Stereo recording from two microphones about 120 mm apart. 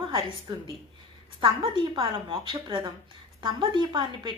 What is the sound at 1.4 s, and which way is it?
A woman's voice, 50° right (ahead or behind).